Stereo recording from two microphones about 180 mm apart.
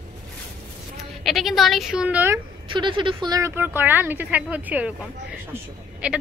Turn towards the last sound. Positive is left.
turn(degrees=-5)  # may be behind; listen again after turning